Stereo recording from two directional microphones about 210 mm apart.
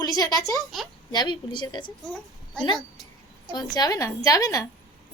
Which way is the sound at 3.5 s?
20° left (ahead or behind).